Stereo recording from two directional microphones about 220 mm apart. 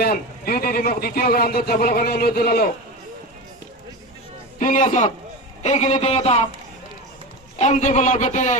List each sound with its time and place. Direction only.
0.0 s speech: 45° left (ahead or behind)
4.6 s a man's voice: 35° left (ahead or behind)
7.6 s a man's voice: 30° left (ahead or behind)